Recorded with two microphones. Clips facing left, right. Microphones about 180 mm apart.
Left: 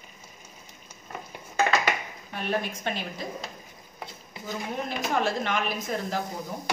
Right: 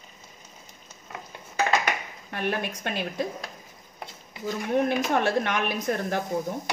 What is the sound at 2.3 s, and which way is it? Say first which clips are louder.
Speech: right 1 dB; 65° right (ahead or behind).